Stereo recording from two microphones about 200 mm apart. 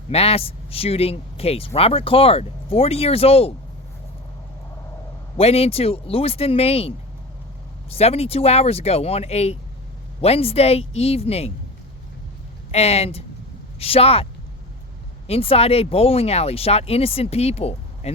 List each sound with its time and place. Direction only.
0.1 s speech: 30° left (ahead or behind)
5.4 s speech: 30° left (ahead or behind)
12.7 s speech: 30° left (ahead or behind)
15.3 s speech: 30° left (ahead or behind)